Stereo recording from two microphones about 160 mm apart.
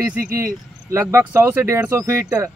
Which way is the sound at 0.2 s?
15° right (ahead or behind).